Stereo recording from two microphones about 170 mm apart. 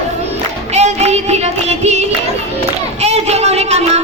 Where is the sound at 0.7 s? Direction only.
40° right (ahead or behind).